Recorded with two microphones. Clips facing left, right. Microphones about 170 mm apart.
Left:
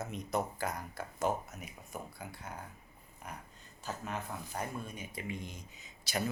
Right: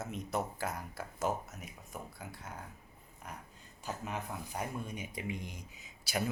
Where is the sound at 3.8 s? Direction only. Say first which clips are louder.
Even; 15° right (ahead or behind).